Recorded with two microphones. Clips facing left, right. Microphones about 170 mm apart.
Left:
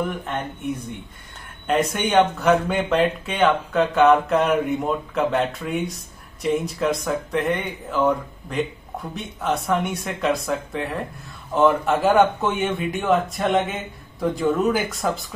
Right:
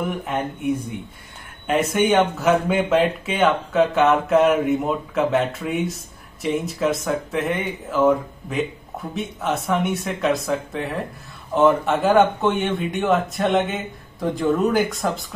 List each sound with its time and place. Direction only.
0.2 s speech: 5° right (ahead or behind)